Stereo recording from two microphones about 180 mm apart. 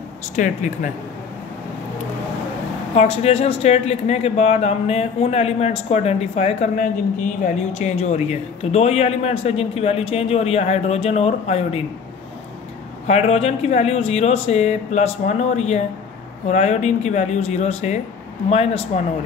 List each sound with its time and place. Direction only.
0.4 s speech: 45° left (ahead or behind)
3.0 s speech: 35° left (ahead or behind)
13.0 s speech: 40° left (ahead or behind)